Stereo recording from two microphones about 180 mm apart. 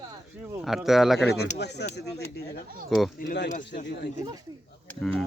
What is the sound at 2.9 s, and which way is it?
Speech, centre (ahead or behind).